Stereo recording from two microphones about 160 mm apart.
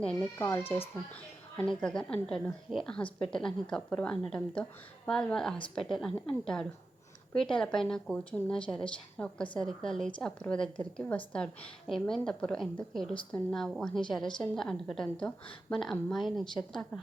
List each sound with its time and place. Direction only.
0.3 s a woman's voice: 15° left (ahead or behind)